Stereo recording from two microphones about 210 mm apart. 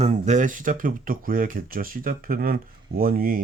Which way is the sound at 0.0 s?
35° right (ahead or behind).